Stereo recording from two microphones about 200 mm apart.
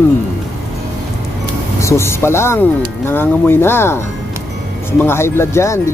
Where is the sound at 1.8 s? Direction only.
15° left (ahead or behind).